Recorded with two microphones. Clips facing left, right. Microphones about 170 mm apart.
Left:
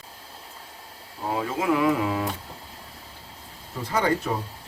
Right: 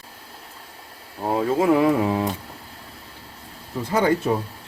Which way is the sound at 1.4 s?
35° right (ahead or behind).